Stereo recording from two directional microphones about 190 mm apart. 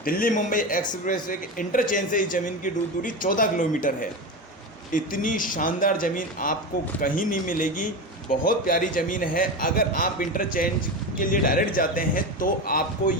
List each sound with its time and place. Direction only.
0.0 s a man's voice: 50° left (ahead or behind)